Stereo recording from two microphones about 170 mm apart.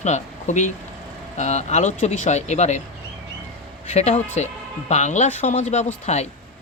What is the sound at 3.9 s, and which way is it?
Speech, 40° left (ahead or behind).